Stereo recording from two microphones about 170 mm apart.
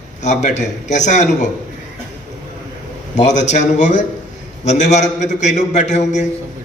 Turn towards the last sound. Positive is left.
turn(degrees=45)  # may be behind; listen again after turning